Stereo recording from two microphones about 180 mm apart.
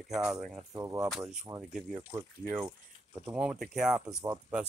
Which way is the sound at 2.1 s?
15° right (ahead or behind).